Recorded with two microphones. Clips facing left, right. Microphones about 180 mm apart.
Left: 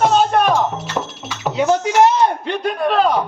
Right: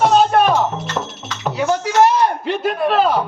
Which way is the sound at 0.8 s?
10° left (ahead or behind).